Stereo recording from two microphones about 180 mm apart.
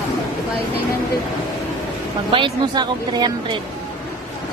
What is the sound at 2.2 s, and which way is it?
Speech, 30° right (ahead or behind).